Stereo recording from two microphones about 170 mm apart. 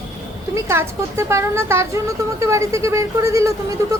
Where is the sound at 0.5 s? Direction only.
15° right (ahead or behind).